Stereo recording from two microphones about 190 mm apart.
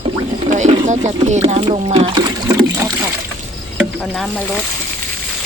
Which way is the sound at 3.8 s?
Centre (ahead or behind).